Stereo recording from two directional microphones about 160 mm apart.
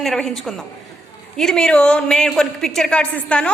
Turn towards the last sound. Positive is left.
turn(degrees=5)  # may be behind; listen again after turning